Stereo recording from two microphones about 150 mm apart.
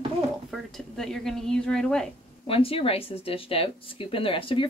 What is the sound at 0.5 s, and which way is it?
Speech, centre (ahead or behind).